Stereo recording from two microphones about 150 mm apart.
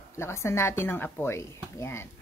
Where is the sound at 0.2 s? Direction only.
15° left (ahead or behind).